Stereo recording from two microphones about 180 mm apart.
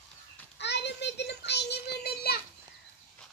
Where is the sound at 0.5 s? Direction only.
70° left (ahead or behind).